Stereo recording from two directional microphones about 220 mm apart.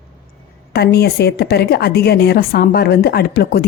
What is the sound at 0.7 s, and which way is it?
A woman's voice, 45° left (ahead or behind).